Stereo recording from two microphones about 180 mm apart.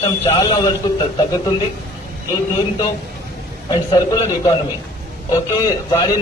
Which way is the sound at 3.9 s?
20° left (ahead or behind).